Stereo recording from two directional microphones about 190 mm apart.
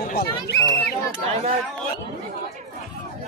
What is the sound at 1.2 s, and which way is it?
Speech, 35° right (ahead or behind).